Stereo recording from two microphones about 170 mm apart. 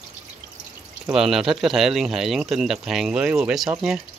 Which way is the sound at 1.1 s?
Centre (ahead or behind).